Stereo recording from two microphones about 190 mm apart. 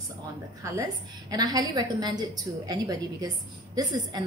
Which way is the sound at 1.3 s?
20° right (ahead or behind).